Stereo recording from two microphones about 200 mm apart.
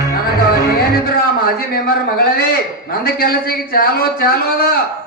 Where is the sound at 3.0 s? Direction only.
50° left (ahead or behind).